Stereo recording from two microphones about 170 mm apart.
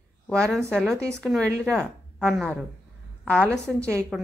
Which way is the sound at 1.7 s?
5° left (ahead or behind).